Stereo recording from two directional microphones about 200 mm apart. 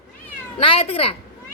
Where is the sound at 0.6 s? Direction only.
30° left (ahead or behind).